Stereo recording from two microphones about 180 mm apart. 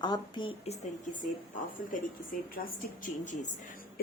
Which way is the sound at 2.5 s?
50° left (ahead or behind).